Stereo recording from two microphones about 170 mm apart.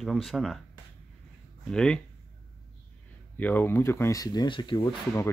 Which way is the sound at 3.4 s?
10° left (ahead or behind).